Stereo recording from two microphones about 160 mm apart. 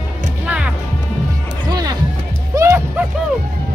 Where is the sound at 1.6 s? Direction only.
25° right (ahead or behind).